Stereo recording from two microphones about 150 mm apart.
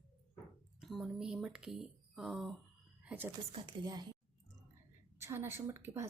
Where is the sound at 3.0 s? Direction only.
15° right (ahead or behind).